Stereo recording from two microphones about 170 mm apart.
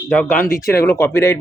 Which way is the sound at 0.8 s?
15° left (ahead or behind).